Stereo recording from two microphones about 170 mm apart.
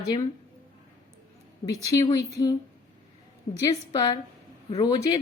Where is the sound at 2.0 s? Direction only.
20° left (ahead or behind).